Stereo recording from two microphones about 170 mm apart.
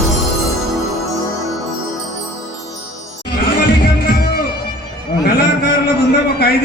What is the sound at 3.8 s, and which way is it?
Music, 65° left (ahead or behind).